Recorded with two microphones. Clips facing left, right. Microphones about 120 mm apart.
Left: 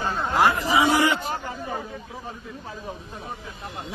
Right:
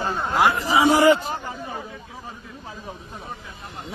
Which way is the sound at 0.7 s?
40° right (ahead or behind).